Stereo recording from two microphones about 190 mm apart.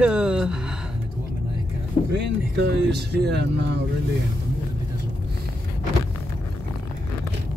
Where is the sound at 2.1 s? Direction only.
65° right (ahead or behind).